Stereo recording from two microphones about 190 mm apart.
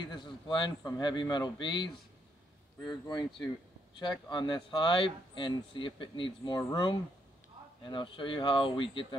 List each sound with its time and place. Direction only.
0.0 s a man's voice: 25° left (ahead or behind)